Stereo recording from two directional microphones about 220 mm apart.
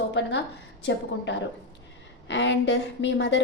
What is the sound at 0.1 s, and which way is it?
A woman's voice, 50° left (ahead or behind).